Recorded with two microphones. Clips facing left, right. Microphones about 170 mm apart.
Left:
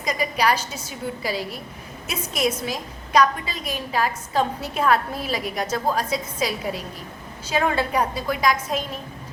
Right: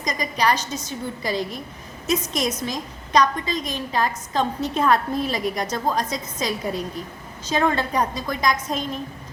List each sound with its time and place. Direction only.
0.0 s a woman's voice: 10° left (ahead or behind)